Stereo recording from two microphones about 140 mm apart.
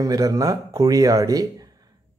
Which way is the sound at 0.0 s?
25° right (ahead or behind).